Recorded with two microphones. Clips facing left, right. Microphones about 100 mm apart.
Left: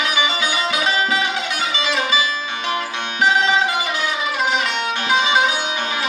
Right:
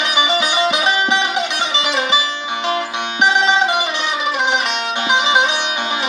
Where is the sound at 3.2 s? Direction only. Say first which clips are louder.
Right 2 dB; 20° right (ahead or behind).